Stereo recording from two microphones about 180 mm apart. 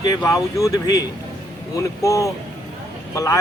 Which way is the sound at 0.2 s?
15° left (ahead or behind).